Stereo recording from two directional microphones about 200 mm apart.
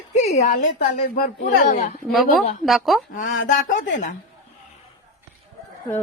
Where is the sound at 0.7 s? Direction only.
50° left (ahead or behind).